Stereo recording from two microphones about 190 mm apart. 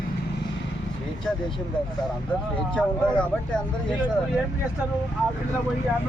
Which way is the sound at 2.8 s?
5° left (ahead or behind).